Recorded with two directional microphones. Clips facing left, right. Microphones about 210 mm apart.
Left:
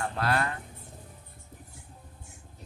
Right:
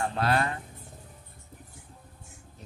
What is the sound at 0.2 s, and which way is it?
Speech, 25° right (ahead or behind).